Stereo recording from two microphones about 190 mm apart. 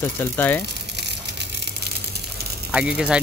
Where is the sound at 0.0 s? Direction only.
10° left (ahead or behind).